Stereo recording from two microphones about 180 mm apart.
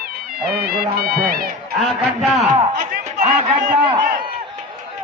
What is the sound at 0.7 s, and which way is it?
Speech, 55° right (ahead or behind).